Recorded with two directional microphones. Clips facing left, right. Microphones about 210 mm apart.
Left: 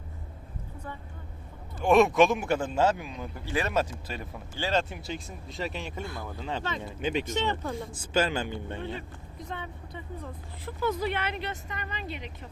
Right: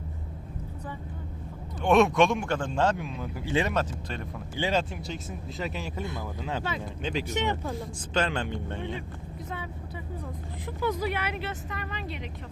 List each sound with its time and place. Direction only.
1.8 s speech: centre (ahead or behind)
3.4 s speech: 20° right (ahead or behind)
3.8 s speech: 5° left (ahead or behind)
4.5 s speech: 15° right (ahead or behind)
4.8 s speech: centre (ahead or behind)
6.0 s speech: 20° right (ahead or behind)
6.2 s speech: 5° right (ahead or behind)
7.3 s speech: 10° right (ahead or behind)